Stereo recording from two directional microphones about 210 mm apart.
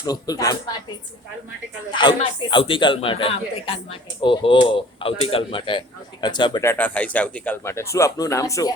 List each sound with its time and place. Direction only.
0.0 s speech: 15° left (ahead or behind)
1.9 s a man's voice: 20° left (ahead or behind)